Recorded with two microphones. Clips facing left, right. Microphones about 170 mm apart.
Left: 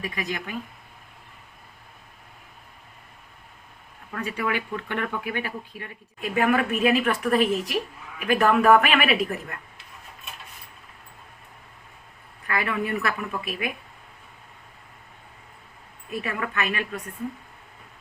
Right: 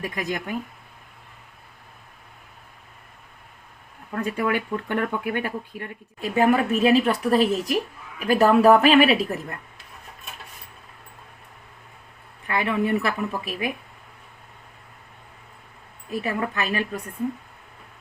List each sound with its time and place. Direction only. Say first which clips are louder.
0.2 s speech: right 4 dB; 50° right (ahead or behind)
4.1 s speech: right 4 dB; 40° right (ahead or behind)
6.1 s a woman's voice: right 3 dB; 30° right (ahead or behind)
12.5 s speech: right 4 dB; 25° right (ahead or behind)
16.2 s a woman's voice: right 2 dB; 30° right (ahead or behind)